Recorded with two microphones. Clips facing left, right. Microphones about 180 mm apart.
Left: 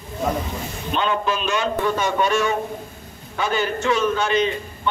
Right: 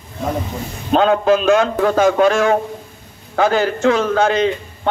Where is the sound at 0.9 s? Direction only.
90° right.